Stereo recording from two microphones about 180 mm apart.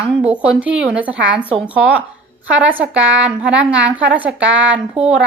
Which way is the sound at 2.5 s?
10° right (ahead or behind).